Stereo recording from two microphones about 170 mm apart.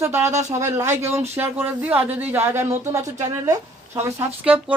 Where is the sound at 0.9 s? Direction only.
40° right (ahead or behind).